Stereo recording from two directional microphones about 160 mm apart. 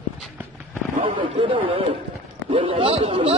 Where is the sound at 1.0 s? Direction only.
35° right (ahead or behind).